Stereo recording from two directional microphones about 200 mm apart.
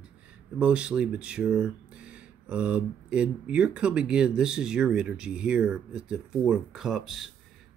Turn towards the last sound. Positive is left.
turn(degrees=0)  # may be behind; listen again after turning